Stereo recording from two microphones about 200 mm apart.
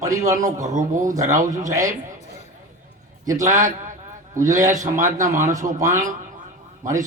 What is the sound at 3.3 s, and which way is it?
A man's voice, 40° right (ahead or behind).